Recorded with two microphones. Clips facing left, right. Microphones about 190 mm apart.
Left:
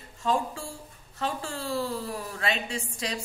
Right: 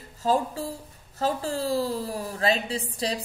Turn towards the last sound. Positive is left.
turn(degrees=-35)  # may be behind; listen again after turning